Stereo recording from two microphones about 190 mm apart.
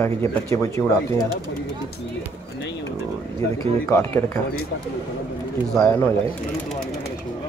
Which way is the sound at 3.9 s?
10° left (ahead or behind).